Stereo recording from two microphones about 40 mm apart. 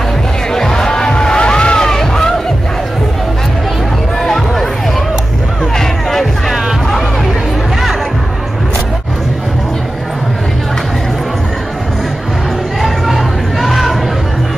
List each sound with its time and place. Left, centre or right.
0.5 s music: centre
1.9 s crowd: centre
4.2 s music: centre
5.8 s music: centre
12.8 s music: centre